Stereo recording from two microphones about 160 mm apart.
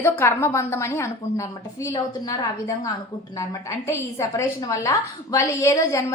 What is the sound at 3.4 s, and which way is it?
A woman's voice, 15° left (ahead or behind).